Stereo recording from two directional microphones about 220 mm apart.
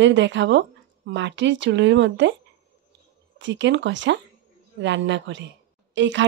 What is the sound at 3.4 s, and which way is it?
A woman's voice, 55° right (ahead or behind).